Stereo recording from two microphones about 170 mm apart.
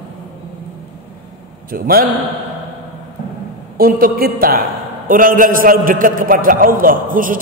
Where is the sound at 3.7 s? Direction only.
60° right (ahead or behind).